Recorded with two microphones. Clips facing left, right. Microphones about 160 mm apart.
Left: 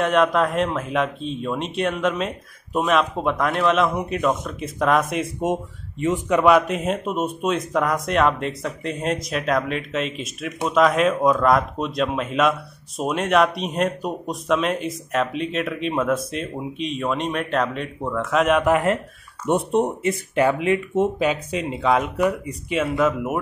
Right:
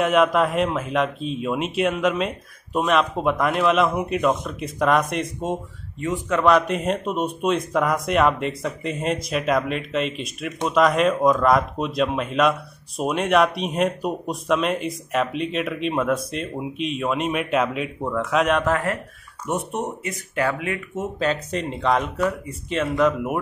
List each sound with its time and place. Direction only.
0.0 s speech: centre (ahead or behind)
5.4 s speech: 20° left (ahead or behind); by 18.6 s centre (ahead or behind)
18.6 s speech: 20° left (ahead or behind)
19.4 s speech: 30° left (ahead or behind)
21.2 s speech: 10° left (ahead or behind)